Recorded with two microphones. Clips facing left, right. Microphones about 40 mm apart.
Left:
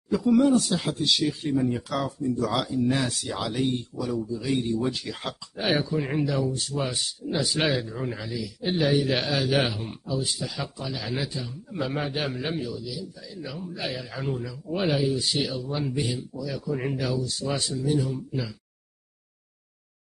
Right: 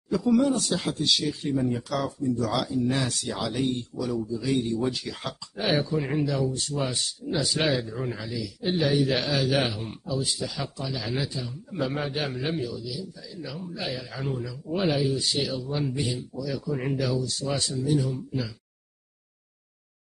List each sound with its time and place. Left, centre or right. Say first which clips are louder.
0.1 s a man's voice: left 2 dB; centre
3.0 s a man's voice: even; centre